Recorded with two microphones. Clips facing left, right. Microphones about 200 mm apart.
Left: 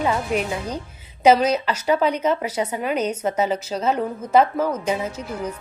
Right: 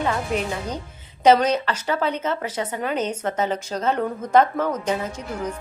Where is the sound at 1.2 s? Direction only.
10° left (ahead or behind).